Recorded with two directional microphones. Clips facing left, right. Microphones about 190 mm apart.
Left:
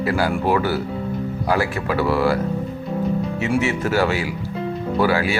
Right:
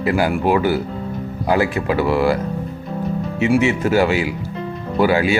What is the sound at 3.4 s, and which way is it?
Speech, 15° right (ahead or behind).